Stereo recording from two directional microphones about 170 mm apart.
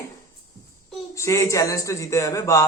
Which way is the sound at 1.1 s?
15° left (ahead or behind).